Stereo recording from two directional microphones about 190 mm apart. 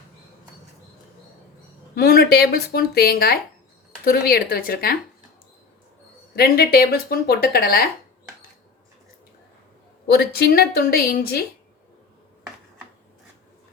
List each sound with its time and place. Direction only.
2.0 s speech: 55° left (ahead or behind)
6.3 s speech: 55° left (ahead or behind)
10.1 s speech: 55° left (ahead or behind)